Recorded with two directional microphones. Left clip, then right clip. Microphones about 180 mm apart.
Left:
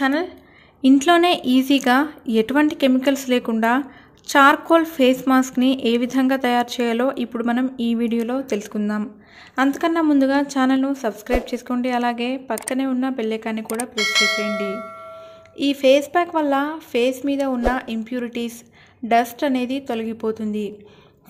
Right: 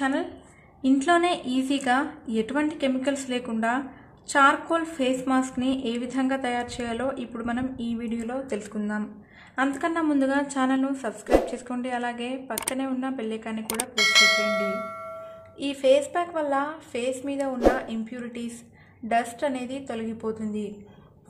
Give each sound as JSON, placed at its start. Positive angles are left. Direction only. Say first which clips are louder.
{"t": 0.0, "sound": "a woman's voice", "louder": "left 6 dB", "side_deg": 30}
{"t": 13.7, "sound": "speech", "louder": "even", "side_deg": 0}
{"t": 15.5, "sound": "speech", "louder": "left 5 dB", "side_deg": 30}